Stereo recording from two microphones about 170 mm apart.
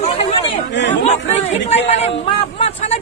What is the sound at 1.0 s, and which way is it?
A man's voice, 40° left (ahead or behind).